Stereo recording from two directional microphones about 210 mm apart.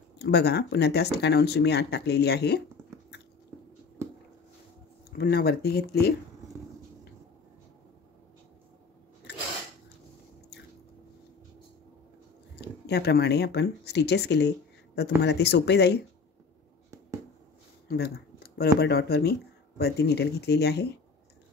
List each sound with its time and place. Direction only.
0.2 s speech: 50° left (ahead or behind)
5.1 s speech: 50° left (ahead or behind)
12.5 s speech: 50° left (ahead or behind)
17.8 s a sound: 50° left (ahead or behind)
18.8 s speech: 50° left (ahead or behind)